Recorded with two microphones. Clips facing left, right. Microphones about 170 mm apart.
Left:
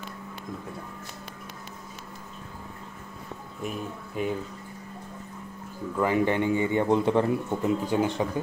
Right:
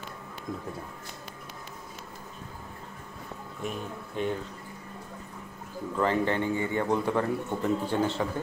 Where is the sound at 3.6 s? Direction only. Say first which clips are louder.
Left 1 dB; 5° left (ahead or behind).